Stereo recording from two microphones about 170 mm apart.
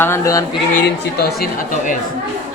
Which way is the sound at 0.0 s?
15° left (ahead or behind).